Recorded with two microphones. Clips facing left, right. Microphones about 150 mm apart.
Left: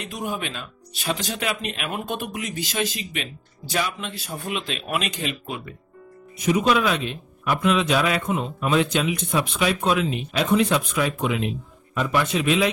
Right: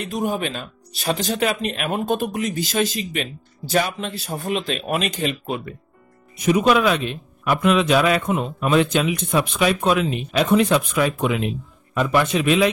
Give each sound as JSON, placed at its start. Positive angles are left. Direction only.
{"t": 0.0, "sound": "speech", "side_deg": -35}
{"t": 6.4, "sound": "speech", "side_deg": -55}